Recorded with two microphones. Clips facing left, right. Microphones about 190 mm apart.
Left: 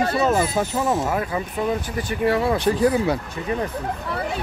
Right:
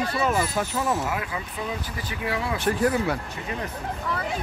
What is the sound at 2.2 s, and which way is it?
Speech, 60° left (ahead or behind).